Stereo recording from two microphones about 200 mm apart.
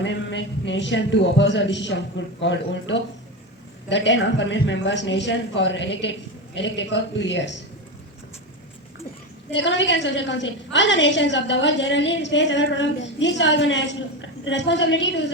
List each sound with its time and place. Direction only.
0.0 s speech: 65° left (ahead or behind)
9.5 s speech: 65° left (ahead or behind)